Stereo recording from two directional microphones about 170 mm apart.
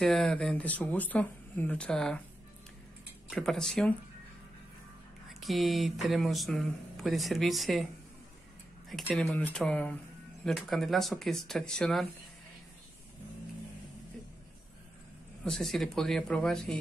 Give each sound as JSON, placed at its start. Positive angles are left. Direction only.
{"t": 0.0, "sound": "speech", "side_deg": 0}
{"t": 3.3, "sound": "speech", "side_deg": 5}
{"t": 5.3, "sound": "speech", "side_deg": 0}
{"t": 9.1, "sound": "speech", "side_deg": 5}
{"t": 15.4, "sound": "speech", "side_deg": 5}